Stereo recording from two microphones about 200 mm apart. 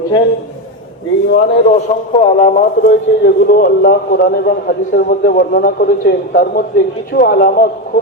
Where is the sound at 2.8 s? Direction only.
60° left (ahead or behind).